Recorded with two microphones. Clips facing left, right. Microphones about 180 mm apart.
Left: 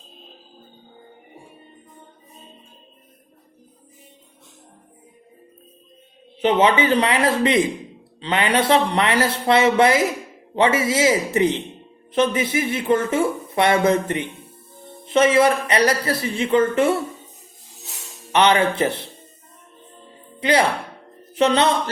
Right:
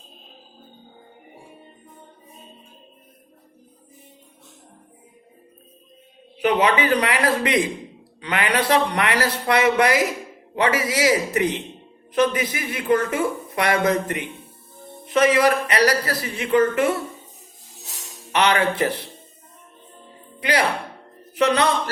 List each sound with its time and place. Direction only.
6.4 s speech: 25° left (ahead or behind)
18.3 s speech: 25° left (ahead or behind)
20.4 s speech: 25° left (ahead or behind)